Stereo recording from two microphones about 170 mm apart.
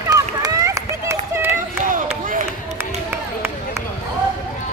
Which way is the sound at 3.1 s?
15° right (ahead or behind).